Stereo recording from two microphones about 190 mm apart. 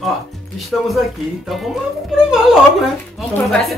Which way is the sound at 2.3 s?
Centre (ahead or behind).